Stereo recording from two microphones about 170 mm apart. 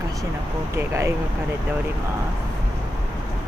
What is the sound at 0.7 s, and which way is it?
Speech, 15° right (ahead or behind).